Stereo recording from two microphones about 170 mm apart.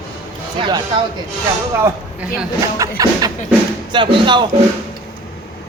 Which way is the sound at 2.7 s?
20° right (ahead or behind).